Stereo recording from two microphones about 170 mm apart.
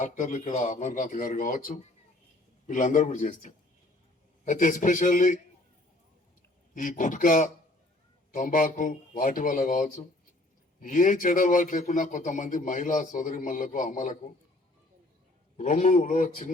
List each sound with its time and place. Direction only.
0.0 s a man's voice: 45° left (ahead or behind)
6.7 s a man's voice: 50° left (ahead or behind)
15.5 s a man's voice: 45° left (ahead or behind)